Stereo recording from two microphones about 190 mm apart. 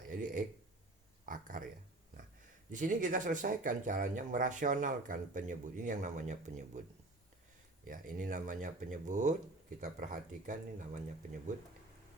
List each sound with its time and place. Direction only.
0.1 s a sound: 45° right (ahead or behind)
2.7 s speech: 45° right (ahead or behind)
7.9 s speech: 45° right (ahead or behind)